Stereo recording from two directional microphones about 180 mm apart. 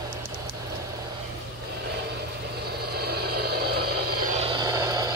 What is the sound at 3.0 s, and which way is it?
Vehicle, 60° right (ahead or behind).